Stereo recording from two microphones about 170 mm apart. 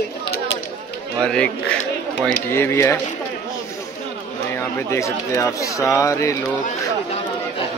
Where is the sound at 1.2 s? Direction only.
5° left (ahead or behind).